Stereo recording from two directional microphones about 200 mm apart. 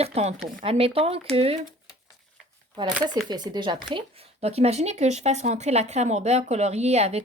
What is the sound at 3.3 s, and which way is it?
Speech, 20° right (ahead or behind).